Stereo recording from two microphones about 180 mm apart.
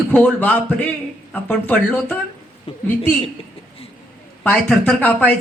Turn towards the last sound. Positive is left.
turn(degrees=10)  # may be behind; listen again after turning